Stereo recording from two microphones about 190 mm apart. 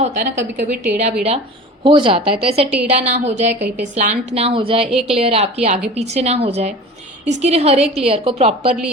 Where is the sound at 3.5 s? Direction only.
65° right (ahead or behind).